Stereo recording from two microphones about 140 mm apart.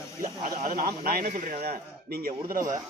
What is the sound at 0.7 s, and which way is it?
A man's voice, 90° right.